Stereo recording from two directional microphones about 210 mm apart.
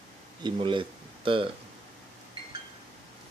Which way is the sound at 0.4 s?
25° right (ahead or behind).